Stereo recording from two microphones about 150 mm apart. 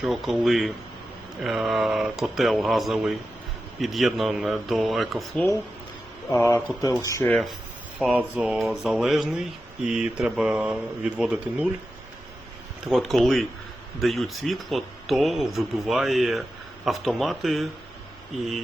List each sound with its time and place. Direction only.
0.0 s speech: centre (ahead or behind)
6.2 s speech: 20° left (ahead or behind)
7.3 s speech: centre (ahead or behind)
12.8 s speech: centre (ahead or behind)